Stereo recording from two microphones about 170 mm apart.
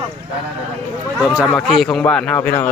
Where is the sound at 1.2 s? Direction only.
5° right (ahead or behind).